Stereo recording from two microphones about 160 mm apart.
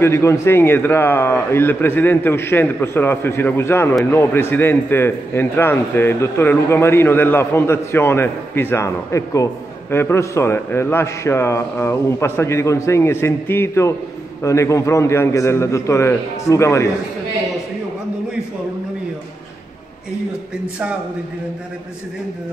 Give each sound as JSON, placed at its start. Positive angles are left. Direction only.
{"t": 0.0, "sound": "a man's voice", "side_deg": 15}